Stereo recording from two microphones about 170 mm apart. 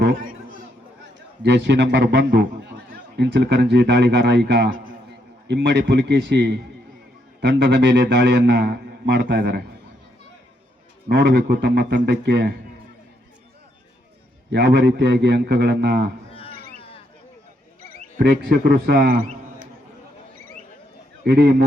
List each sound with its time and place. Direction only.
0.0 s a sound: 55° right (ahead or behind)
1.4 s a man's voice: 90° right
11.1 s a man's voice: 75° right (ahead or behind)
14.5 s a man's voice: 75° right (ahead or behind)
16.3 s whale vocalization: 35° left (ahead or behind)
18.2 s a man's voice: 65° right (ahead or behind)
21.2 s a man's voice: 70° right (ahead or behind)